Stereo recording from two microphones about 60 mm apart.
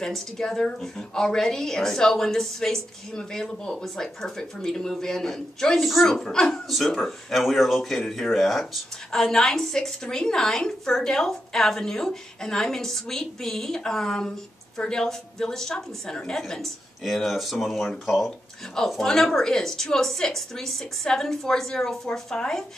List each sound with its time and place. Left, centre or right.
0.0 s a woman's voice: centre